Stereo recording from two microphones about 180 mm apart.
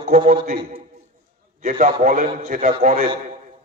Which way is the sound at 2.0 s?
50° right (ahead or behind).